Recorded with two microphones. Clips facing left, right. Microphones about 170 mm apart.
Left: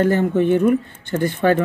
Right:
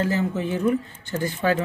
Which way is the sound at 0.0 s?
55° left (ahead or behind).